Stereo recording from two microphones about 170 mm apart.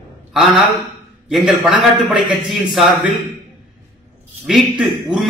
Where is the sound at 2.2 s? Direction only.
25° right (ahead or behind).